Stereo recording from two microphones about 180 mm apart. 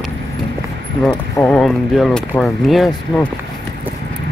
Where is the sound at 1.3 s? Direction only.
10° left (ahead or behind).